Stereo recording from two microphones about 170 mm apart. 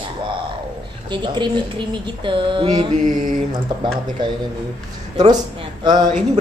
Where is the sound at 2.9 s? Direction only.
50° right (ahead or behind).